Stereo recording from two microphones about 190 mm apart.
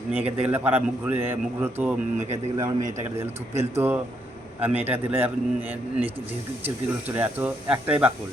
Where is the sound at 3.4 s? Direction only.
35° right (ahead or behind).